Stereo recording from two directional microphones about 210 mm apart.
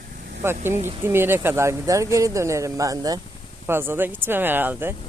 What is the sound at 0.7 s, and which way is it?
Speech, 35° right (ahead or behind).